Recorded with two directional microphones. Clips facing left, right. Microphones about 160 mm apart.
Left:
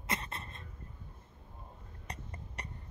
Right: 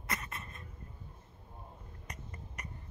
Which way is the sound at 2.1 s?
30° left (ahead or behind).